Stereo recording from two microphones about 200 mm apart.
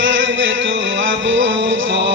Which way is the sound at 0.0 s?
65° right (ahead or behind).